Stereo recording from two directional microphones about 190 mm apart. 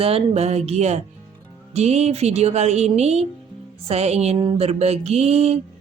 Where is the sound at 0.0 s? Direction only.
35° right (ahead or behind).